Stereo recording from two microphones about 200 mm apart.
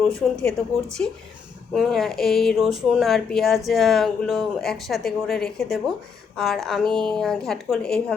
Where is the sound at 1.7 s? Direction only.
Centre (ahead or behind).